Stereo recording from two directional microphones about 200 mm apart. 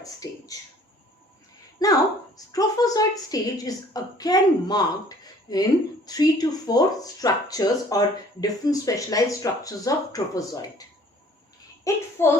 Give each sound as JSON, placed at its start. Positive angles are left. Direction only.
{"t": 0.0, "sound": "a sound", "side_deg": 15}
{"t": 1.8, "sound": "a woman's voice", "side_deg": 20}
{"t": 11.9, "sound": "speech", "side_deg": 15}